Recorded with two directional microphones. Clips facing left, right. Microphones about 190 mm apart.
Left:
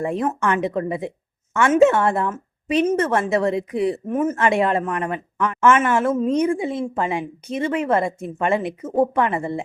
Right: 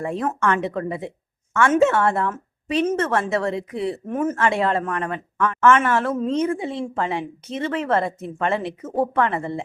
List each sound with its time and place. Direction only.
0.0 s speech: 15° left (ahead or behind)